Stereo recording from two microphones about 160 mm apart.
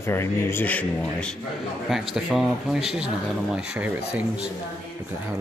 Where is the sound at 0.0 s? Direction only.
15° left (ahead or behind).